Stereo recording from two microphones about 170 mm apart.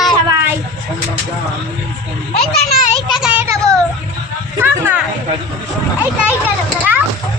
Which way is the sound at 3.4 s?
20° right (ahead or behind).